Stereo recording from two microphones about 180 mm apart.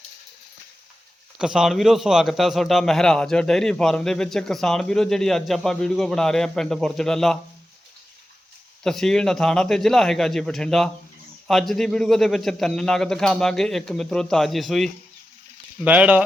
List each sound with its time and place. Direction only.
1.4 s a man's voice: 5° right (ahead or behind)
8.8 s a man's voice: 5° left (ahead or behind)